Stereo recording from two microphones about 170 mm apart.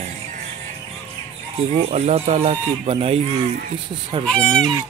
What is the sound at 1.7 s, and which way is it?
Speech, 40° right (ahead or behind).